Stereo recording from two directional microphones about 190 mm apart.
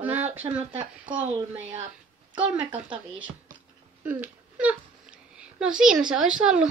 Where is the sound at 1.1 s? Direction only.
25° right (ahead or behind).